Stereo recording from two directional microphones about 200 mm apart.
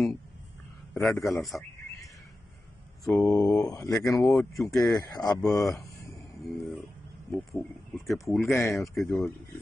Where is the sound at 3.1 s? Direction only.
15° left (ahead or behind).